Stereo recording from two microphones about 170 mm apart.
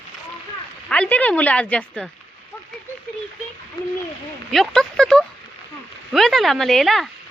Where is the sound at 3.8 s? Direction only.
25° left (ahead or behind).